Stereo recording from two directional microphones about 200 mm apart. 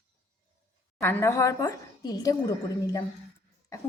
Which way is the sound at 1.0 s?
15° left (ahead or behind).